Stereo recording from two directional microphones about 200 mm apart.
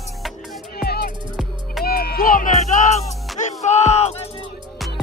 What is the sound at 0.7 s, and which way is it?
Music, 50° left (ahead or behind).